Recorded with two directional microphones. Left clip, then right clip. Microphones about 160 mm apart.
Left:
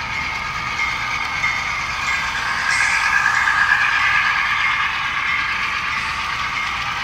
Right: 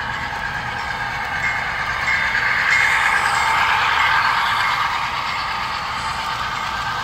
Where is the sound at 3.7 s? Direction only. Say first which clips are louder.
Left 1 dB; 80° right.